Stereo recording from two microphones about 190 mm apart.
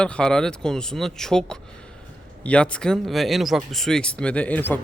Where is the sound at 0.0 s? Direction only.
5° left (ahead or behind).